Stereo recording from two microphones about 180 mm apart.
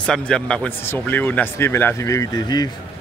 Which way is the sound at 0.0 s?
5° left (ahead or behind).